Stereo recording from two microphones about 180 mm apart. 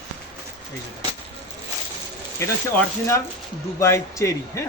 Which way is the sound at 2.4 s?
15° left (ahead or behind).